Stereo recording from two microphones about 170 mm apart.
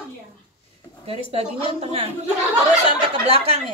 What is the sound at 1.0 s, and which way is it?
Speech, 35° right (ahead or behind).